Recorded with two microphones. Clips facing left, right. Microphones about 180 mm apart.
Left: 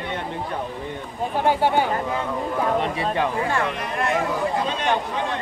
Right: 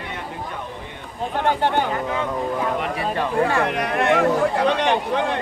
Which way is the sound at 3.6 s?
65° right (ahead or behind).